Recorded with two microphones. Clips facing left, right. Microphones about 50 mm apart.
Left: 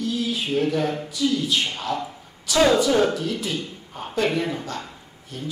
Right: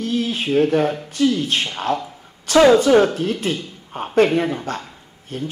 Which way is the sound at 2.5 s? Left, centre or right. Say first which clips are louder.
Right 6 dB; right.